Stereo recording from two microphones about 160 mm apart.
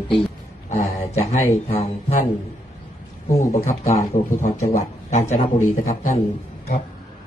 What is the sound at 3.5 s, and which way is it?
A man's voice, 45° left (ahead or behind).